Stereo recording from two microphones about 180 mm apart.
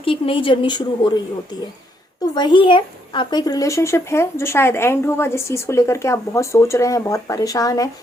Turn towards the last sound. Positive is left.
turn(degrees=20)  # may be behind; listen again after turning